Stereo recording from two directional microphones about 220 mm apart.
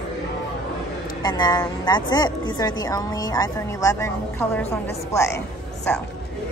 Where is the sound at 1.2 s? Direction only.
20° left (ahead or behind).